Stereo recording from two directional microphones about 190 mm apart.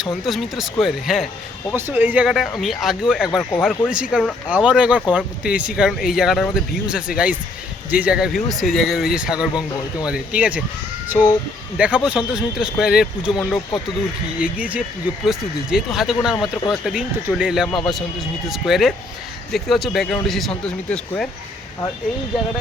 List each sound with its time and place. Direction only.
0.0 s speech: centre (ahead or behind)
11.9 s speech: 5° right (ahead or behind)
16.3 s speech: 20° left (ahead or behind)
16.8 s speech: 5° right (ahead or behind)
17.7 s speech: 25° left (ahead or behind)
18.4 s speech: centre (ahead or behind)